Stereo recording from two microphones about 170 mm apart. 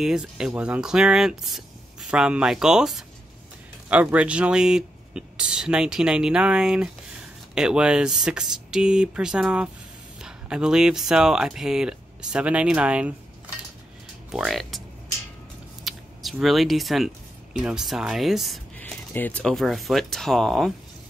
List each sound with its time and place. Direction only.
0.0 s speech: 5° right (ahead or behind)
14.3 s speech: centre (ahead or behind)
15.8 s a sound: centre (ahead or behind)
17.6 s speech: 5° right (ahead or behind)
18.8 s speech: 10° left (ahead or behind)